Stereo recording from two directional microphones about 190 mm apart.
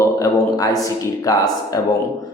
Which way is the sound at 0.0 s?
20° left (ahead or behind).